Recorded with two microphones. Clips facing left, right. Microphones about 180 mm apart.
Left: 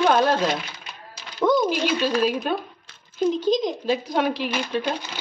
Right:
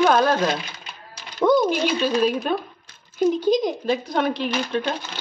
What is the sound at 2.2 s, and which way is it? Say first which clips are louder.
Speech: right 1 dB; 5° left (ahead or behind).